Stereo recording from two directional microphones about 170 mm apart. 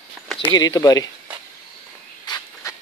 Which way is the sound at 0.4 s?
25° left (ahead or behind).